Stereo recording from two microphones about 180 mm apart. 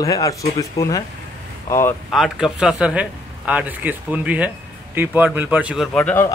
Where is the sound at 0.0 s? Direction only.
20° left (ahead or behind).